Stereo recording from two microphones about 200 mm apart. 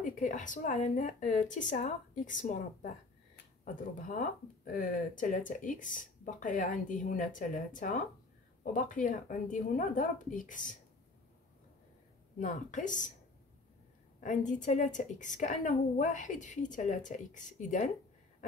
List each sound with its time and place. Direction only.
0.0 s speech: 40° left (ahead or behind)
12.4 s speech: 40° left (ahead or behind)
14.2 s speech: 40° left (ahead or behind)